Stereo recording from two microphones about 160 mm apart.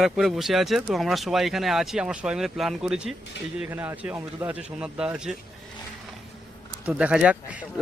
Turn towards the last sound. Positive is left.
turn(degrees=-10)  # may be behind; listen again after turning